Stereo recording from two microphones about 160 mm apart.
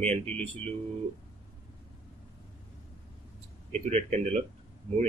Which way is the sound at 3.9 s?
40° right (ahead or behind).